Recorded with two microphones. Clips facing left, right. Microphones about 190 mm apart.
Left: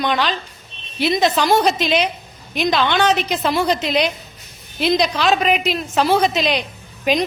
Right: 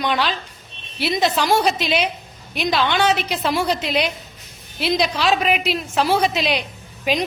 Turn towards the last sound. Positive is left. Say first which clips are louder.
# left 3 dB
turn(degrees=0)  # may be behind; listen again after turning